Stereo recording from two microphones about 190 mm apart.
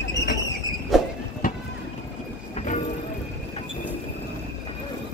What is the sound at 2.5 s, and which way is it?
Train, 35° left (ahead or behind).